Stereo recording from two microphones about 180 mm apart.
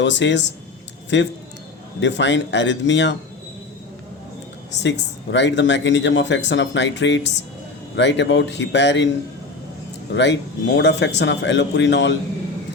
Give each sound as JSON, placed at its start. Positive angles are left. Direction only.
{"t": 0.0, "sound": "speech", "side_deg": 90}
{"t": 4.8, "sound": "speech", "side_deg": 85}
{"t": 10.2, "sound": "speech", "side_deg": 85}